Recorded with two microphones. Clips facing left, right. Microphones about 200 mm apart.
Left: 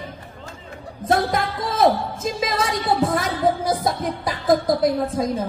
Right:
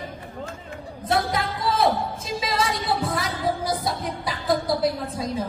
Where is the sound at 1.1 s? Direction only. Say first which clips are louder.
Left 4 dB; 45° left (ahead or behind).